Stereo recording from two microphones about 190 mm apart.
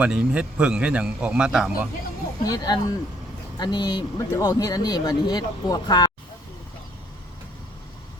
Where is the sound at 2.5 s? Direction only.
20° left (ahead or behind).